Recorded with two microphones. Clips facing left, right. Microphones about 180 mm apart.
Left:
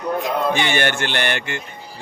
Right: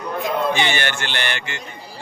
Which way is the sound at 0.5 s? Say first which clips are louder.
Left 2 dB; 50° left (ahead or behind).